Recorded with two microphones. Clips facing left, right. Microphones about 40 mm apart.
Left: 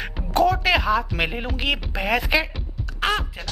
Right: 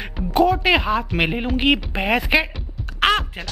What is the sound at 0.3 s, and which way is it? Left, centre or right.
Speech, centre.